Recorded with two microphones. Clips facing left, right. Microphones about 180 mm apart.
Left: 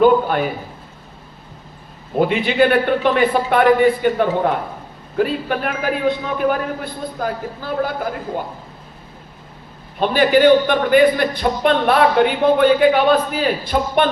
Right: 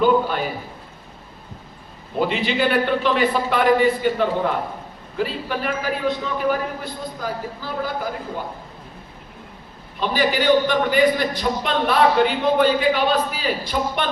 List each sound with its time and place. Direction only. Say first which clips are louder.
0.0 s a sound: left 4 dB; 55° left (ahead or behind)
2.1 s a man's voice: left 5 dB; 55° left (ahead or behind)
10.0 s a man's voice: left 8 dB; 55° left (ahead or behind)